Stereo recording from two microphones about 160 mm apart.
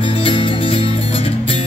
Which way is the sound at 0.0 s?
35° left (ahead or behind).